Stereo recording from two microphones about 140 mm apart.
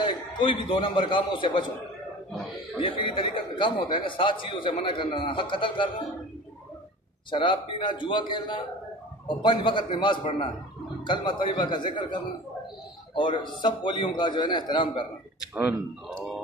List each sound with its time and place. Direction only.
0.0 s a man's voice: 35° left (ahead or behind)
2.8 s a man's voice: 40° left (ahead or behind)
7.2 s a man's voice: 35° left (ahead or behind)